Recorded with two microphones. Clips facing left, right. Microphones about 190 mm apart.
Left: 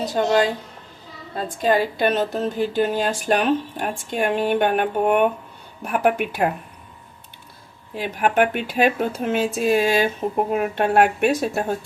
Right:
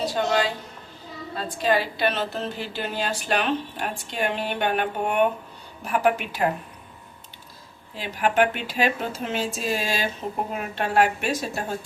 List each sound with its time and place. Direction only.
0.1 s speech: 40° left (ahead or behind)
1.5 s a woman's voice: 45° left (ahead or behind)
7.9 s speech: 55° left (ahead or behind)